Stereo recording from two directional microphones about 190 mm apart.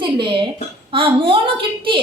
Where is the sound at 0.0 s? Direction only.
25° right (ahead or behind).